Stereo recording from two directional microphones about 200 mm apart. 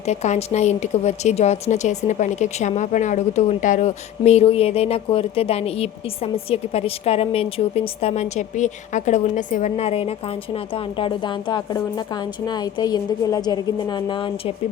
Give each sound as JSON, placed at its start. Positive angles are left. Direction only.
{"t": 0.0, "sound": "a woman's voice", "side_deg": 35}